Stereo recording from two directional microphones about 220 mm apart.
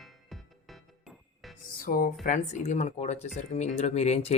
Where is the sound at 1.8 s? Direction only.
40° left (ahead or behind).